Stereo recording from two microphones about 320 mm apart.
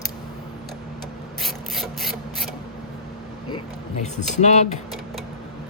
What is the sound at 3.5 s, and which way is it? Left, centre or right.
Speech, left.